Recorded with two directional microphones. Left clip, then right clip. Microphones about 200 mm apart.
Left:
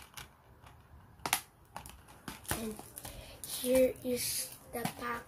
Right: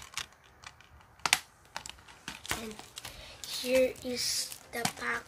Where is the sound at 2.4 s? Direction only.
30° left (ahead or behind).